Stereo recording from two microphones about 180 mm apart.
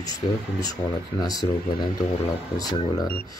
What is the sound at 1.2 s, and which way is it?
Speech, 20° left (ahead or behind).